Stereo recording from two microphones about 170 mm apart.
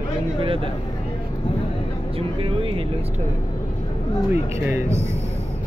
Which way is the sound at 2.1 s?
35° right (ahead or behind).